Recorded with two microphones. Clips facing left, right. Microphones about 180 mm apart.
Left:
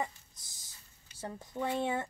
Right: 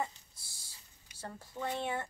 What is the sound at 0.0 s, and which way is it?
Dog, 20° left (ahead or behind).